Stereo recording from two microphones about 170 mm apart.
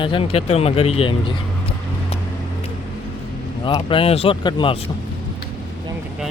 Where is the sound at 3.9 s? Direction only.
35° left (ahead or behind).